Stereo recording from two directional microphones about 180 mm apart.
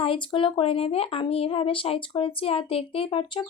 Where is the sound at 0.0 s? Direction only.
30° left (ahead or behind).